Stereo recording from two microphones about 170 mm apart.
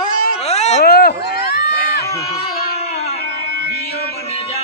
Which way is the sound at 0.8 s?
65° left (ahead or behind).